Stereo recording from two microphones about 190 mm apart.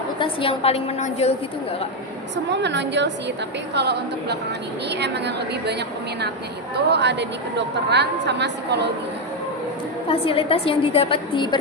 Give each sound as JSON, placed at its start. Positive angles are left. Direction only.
{"t": 0.2, "sound": "a woman's voice", "side_deg": 30}
{"t": 2.5, "sound": "a woman's voice", "side_deg": -65}
{"t": 6.7, "sound": "a woman's voice", "side_deg": -65}
{"t": 10.1, "sound": "a woman's voice", "side_deg": 30}